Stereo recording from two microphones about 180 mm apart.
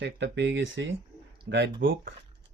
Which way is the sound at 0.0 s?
75° right (ahead or behind).